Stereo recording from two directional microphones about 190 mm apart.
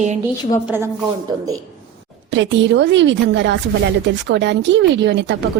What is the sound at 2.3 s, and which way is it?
Speech, 70° right (ahead or behind).